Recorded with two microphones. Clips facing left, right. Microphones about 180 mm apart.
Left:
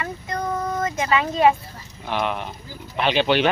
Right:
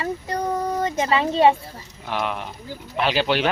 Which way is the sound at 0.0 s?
35° right (ahead or behind).